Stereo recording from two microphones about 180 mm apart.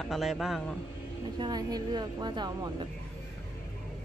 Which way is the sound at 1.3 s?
25° right (ahead or behind).